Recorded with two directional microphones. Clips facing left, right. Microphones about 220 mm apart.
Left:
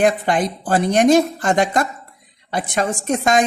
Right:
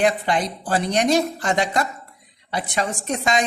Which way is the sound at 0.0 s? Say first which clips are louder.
Left 3 dB; 50° left (ahead or behind).